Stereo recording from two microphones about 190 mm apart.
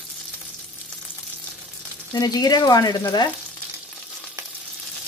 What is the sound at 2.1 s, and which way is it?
Speech, 20° left (ahead or behind).